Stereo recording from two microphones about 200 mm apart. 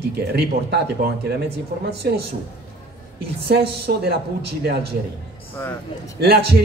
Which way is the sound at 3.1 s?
55° right (ahead or behind).